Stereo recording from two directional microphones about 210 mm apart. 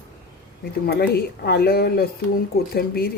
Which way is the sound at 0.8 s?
50° left (ahead or behind).